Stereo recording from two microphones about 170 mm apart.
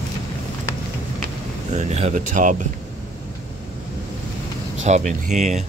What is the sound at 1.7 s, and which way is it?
Speech, 40° right (ahead or behind).